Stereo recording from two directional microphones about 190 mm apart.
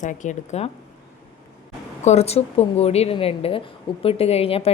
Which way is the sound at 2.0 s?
35° left (ahead or behind).